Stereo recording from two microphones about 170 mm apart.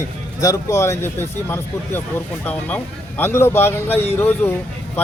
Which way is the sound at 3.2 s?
15° left (ahead or behind).